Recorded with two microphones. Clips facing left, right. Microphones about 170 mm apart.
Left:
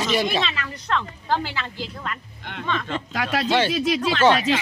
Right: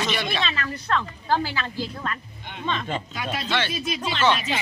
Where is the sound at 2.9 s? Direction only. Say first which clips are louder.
Left 4 dB; 85° left.